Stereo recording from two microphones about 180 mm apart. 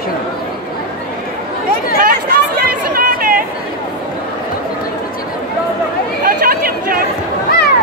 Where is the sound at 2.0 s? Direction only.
55° right (ahead or behind).